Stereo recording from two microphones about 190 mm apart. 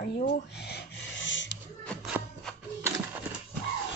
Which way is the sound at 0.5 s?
60° left (ahead or behind).